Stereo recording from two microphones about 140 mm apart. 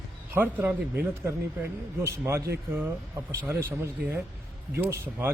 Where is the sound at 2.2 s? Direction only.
15° right (ahead or behind).